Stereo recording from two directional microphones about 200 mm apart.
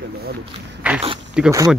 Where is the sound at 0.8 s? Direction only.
5° right (ahead or behind).